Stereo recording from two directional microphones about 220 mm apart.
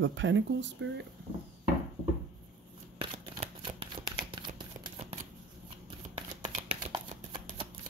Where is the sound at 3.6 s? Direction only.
20° right (ahead or behind).